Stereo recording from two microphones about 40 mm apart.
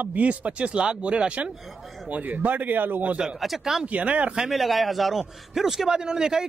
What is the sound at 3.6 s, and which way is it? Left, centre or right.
Speech, centre.